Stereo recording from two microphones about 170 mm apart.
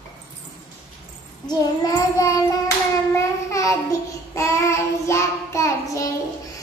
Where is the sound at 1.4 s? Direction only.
20° left (ahead or behind).